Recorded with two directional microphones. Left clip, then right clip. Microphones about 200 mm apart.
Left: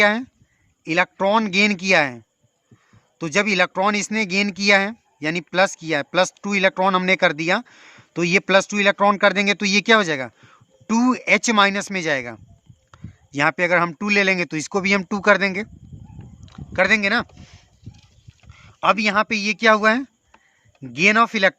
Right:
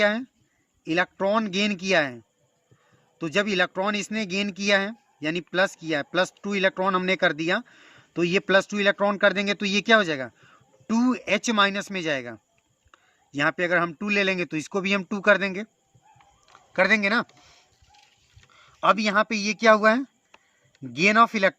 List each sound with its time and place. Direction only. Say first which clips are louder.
0.0 s speech: left 5 dB; 25° left (ahead or behind)
16.5 s a sound: left 3 dB; 10° left (ahead or behind)
18.5 s speech: left 3 dB; 15° left (ahead or behind)